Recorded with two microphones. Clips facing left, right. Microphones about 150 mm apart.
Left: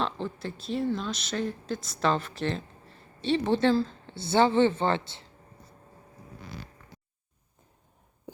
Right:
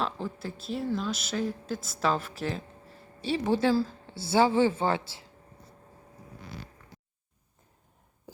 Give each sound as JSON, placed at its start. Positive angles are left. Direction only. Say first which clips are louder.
{"t": 0.0, "sound": "speech", "louder": "left 1 dB", "side_deg": -5}